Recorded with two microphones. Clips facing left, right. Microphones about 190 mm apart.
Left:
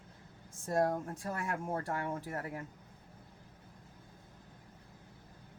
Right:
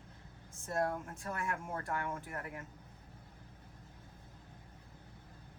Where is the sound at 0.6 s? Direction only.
35° left (ahead or behind).